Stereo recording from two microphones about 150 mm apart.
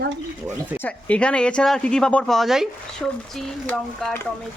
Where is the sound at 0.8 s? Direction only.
10° left (ahead or behind).